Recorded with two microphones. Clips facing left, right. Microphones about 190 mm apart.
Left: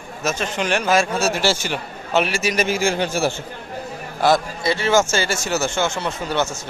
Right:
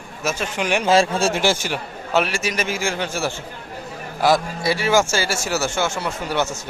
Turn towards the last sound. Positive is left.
turn(degrees=-10)  # may be behind; listen again after turning